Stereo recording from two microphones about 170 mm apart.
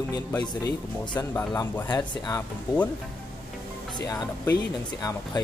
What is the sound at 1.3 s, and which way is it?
Speech, 15° left (ahead or behind).